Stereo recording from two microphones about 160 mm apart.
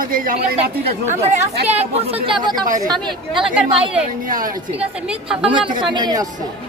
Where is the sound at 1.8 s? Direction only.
40° right (ahead or behind).